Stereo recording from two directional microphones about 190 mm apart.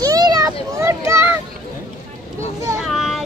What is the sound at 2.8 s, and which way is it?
Child singing, centre (ahead or behind).